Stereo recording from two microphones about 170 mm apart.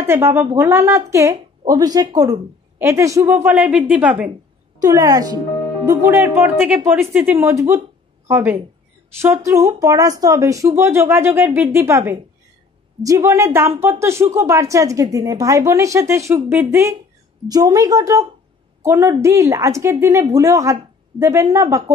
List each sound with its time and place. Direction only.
0.0 s a woman's voice: 15° right (ahead or behind)
4.7 s a woman's voice: 20° right (ahead or behind)